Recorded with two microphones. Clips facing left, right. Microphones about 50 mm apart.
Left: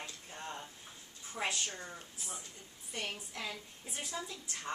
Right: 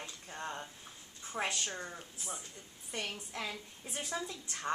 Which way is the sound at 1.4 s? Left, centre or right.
Right.